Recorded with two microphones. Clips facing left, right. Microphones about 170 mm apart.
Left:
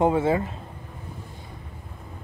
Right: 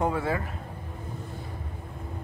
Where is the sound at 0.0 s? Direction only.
25° left (ahead or behind).